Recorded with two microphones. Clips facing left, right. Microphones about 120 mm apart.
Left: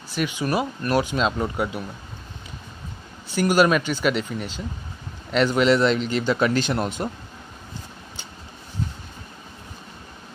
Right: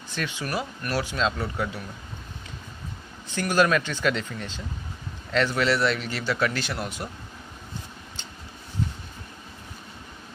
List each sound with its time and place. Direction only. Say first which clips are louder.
0.1 s speech: left 6 dB; 15° left (ahead or behind)
3.3 s a man's voice: left 4 dB; 15° left (ahead or behind)